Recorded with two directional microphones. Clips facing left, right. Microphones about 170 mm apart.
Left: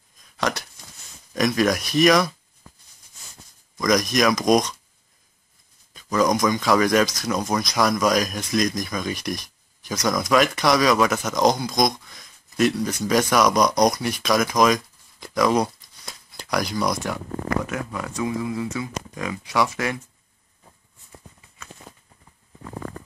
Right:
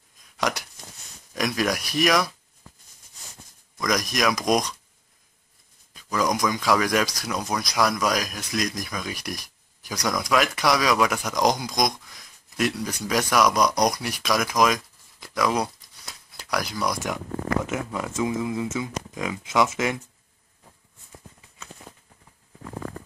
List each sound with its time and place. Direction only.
0.4 s a sound: 15° right (ahead or behind)
1.3 s speech: 5° right (ahead or behind)
3.8 s speech: 5° right (ahead or behind)
5.9 s speech: 5° right (ahead or behind)
17.6 s speech: 20° right (ahead or behind)